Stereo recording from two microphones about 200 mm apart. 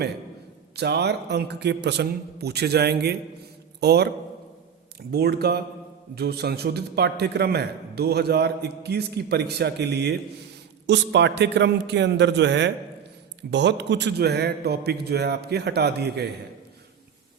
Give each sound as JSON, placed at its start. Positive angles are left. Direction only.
{"t": 0.8, "sound": "a man's voice", "side_deg": -55}
{"t": 5.1, "sound": "a man's voice", "side_deg": -55}